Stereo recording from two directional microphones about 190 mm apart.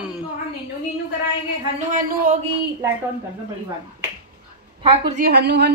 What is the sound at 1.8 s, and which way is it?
Speech, 45° right (ahead or behind).